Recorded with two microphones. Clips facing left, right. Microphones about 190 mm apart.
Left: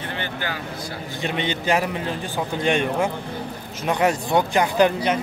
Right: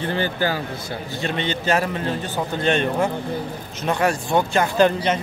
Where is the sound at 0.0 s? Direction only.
35° right (ahead or behind).